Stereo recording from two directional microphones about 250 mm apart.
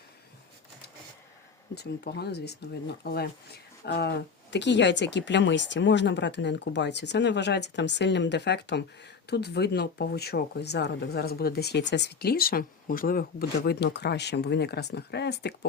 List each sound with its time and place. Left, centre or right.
1.7 s speech: left